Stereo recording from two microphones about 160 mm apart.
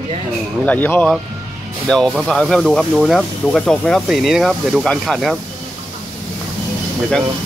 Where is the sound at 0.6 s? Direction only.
10° left (ahead or behind).